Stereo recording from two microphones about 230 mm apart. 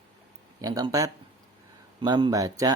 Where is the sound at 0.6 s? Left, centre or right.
Centre.